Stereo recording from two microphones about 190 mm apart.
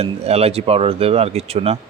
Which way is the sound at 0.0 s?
30° right (ahead or behind).